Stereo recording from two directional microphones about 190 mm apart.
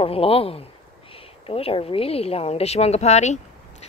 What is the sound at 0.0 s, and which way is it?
Speech, 30° left (ahead or behind).